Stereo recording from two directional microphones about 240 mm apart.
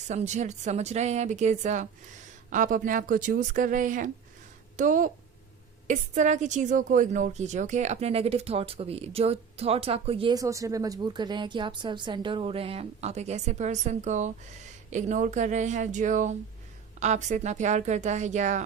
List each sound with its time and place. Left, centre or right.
0.1 s a woman's voice: right